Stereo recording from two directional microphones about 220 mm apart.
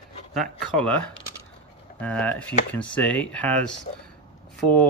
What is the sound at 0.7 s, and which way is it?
Speech, 5° left (ahead or behind).